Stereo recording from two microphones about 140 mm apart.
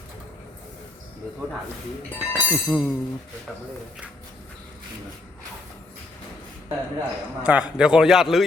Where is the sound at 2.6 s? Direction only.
5° right (ahead or behind).